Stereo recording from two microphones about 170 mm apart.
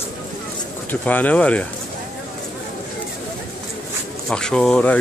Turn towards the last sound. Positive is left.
turn(degrees=5)  # may be behind; listen again after turning